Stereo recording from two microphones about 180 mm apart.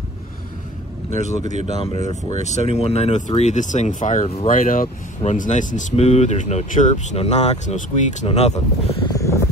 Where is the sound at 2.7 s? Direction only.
35° left (ahead or behind).